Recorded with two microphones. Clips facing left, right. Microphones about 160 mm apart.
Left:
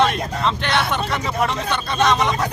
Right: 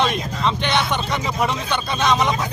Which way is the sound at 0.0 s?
Centre (ahead or behind).